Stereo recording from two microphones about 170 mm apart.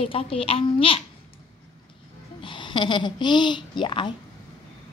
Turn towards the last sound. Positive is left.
turn(degrees=30)  # may be behind; listen again after turning